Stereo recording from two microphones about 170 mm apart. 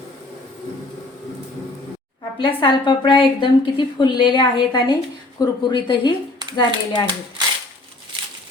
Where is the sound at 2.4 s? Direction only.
30° left (ahead or behind).